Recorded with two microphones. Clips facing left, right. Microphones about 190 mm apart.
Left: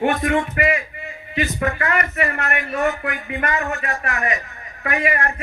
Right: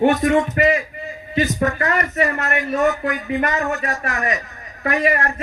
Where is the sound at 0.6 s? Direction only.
35° right (ahead or behind).